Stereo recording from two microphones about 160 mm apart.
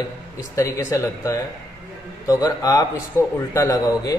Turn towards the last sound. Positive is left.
turn(degrees=20)  # may be behind; listen again after turning